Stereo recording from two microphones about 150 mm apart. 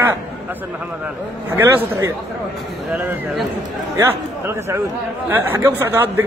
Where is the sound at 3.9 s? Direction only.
20° right (ahead or behind).